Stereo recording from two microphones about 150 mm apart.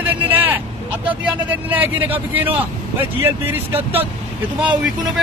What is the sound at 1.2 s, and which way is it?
A man's voice, 10° right (ahead or behind).